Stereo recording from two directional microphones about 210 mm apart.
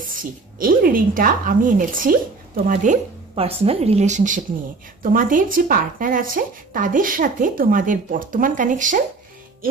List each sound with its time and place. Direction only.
0.0 s speech: 40° right (ahead or behind)